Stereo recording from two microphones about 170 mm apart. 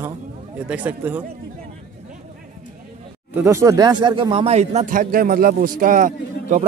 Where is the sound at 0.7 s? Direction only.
10° right (ahead or behind).